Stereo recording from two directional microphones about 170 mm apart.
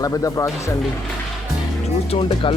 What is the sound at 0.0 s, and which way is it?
Speech, 20° left (ahead or behind).